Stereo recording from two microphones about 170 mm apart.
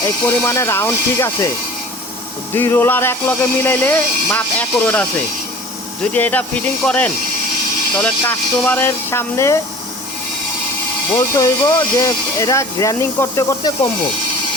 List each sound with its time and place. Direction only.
0.0 s speech: 15° left (ahead or behind)
2.6 s speech: 15° left (ahead or behind)
11.2 s speech: 20° left (ahead or behind)